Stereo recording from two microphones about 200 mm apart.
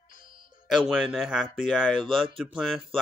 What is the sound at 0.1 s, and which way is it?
Music, 45° left (ahead or behind).